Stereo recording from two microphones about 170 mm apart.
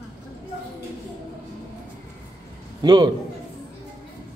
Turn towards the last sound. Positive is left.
turn(degrees=-25)  # may be behind; listen again after turning